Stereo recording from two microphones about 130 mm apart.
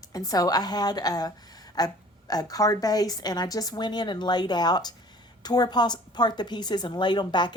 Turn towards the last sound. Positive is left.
turn(degrees=35)  # may be behind; listen again after turning